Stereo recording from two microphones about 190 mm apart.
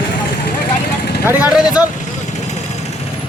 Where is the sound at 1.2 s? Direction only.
10° right (ahead or behind).